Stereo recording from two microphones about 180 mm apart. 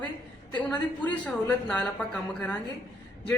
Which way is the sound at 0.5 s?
10° left (ahead or behind).